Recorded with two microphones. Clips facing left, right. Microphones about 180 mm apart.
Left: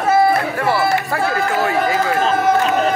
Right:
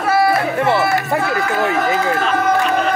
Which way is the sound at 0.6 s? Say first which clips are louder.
Right 1 dB; 20° right (ahead or behind).